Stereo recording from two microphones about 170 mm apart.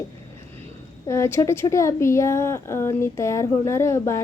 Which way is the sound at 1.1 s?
15° left (ahead or behind).